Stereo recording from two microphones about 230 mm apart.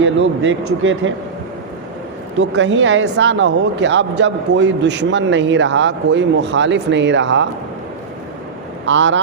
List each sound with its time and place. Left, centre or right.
0.0 s speech: right
2.3 s speech: right
8.9 s speech: right